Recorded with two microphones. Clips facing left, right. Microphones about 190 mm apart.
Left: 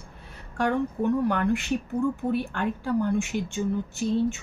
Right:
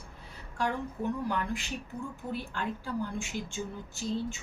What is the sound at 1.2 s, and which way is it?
Speech, 60° left (ahead or behind).